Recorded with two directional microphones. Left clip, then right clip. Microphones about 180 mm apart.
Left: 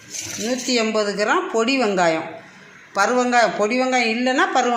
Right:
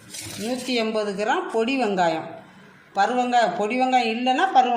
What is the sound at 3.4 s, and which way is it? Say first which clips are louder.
A woman's voice: left 3 dB; centre (ahead or behind).